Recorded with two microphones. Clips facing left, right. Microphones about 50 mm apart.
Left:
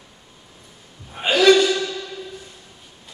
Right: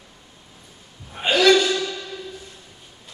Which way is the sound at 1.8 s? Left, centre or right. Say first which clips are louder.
Left 1 dB; centre.